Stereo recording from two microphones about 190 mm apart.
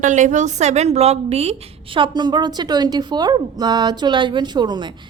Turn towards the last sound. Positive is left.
turn(degrees=-25)  # may be behind; listen again after turning